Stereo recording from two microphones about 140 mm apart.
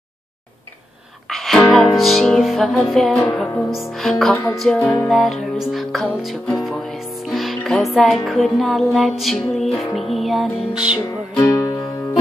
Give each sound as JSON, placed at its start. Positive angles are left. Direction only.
{"t": 1.3, "sound": "music", "side_deg": 0}
{"t": 11.4, "sound": "music", "side_deg": 25}